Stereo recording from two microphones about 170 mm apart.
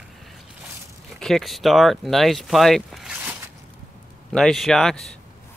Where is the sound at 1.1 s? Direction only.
Centre (ahead or behind).